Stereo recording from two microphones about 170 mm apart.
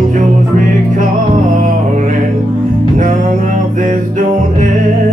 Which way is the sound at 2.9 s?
50° right (ahead or behind).